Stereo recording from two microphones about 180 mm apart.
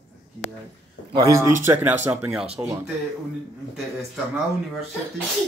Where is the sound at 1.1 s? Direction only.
15° right (ahead or behind).